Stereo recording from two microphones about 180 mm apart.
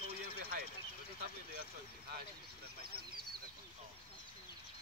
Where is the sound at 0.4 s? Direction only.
60° right (ahead or behind).